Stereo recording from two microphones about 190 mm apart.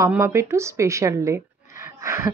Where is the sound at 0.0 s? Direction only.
15° right (ahead or behind).